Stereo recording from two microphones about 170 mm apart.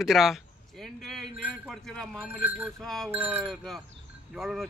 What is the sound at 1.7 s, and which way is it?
Speech, 5° left (ahead or behind).